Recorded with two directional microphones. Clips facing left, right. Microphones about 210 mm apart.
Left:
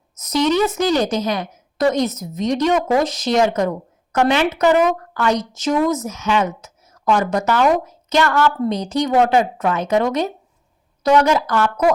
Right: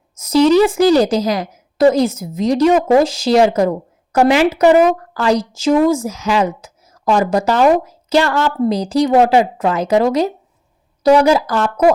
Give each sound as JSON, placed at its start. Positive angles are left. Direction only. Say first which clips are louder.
{"t": 0.2, "sound": "a woman's voice", "louder": "right 6 dB", "side_deg": -30}